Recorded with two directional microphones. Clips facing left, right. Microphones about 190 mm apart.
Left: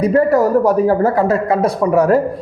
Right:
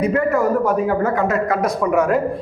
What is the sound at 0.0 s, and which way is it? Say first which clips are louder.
A man's voice: left 5 dB; 35° left (ahead or behind).